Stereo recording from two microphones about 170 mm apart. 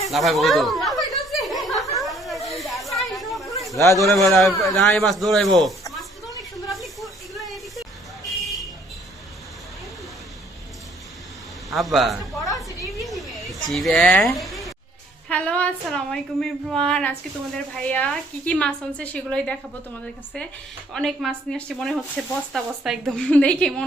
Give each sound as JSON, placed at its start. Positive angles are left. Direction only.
{"t": 0.1, "sound": "snicker", "side_deg": 0}
{"t": 2.0, "sound": "snake", "side_deg": 0}
{"t": 3.7, "sound": "a man's voice", "side_deg": 15}
{"t": 4.1, "sound": "a woman's voice", "side_deg": 0}
{"t": 6.7, "sound": "buzzer", "side_deg": 0}
{"t": 11.7, "sound": "a woman's voice", "side_deg": 0}
{"t": 12.8, "sound": "a sound", "side_deg": 0}
{"t": 15.3, "sound": "a woman's voice", "side_deg": 5}
{"t": 20.9, "sound": "a woman's voice", "side_deg": 0}